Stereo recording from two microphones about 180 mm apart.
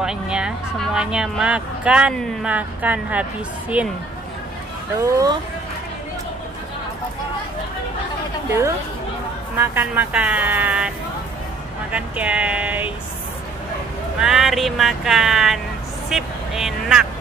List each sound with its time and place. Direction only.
0.0 s speech: 5° right (ahead or behind)
5.0 s speech: 20° right (ahead or behind)
8.5 s speech: 15° right (ahead or behind)
11.9 s speech: 5° right (ahead or behind)
14.2 s speech: centre (ahead or behind)